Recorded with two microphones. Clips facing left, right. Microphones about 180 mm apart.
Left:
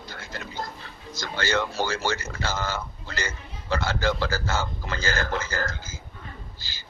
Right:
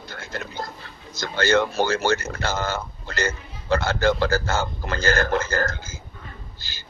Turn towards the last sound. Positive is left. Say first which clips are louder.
# right 1 dB
turn(degrees=-60)  # may be behind; listen again after turning